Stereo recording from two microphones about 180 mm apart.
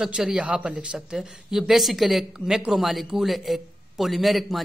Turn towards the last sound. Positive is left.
turn(degrees=0)  # may be behind; listen again after turning